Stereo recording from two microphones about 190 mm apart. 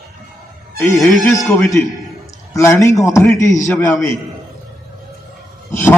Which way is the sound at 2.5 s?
15° left (ahead or behind).